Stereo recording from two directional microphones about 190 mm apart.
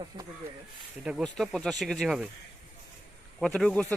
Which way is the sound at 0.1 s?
25° right (ahead or behind).